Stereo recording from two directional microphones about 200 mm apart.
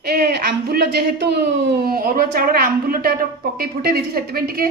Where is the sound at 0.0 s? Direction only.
55° right (ahead or behind).